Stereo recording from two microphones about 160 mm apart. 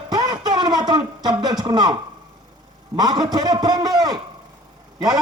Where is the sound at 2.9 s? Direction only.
25° right (ahead or behind).